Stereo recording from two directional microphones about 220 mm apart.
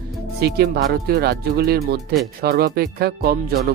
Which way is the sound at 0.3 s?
45° right (ahead or behind).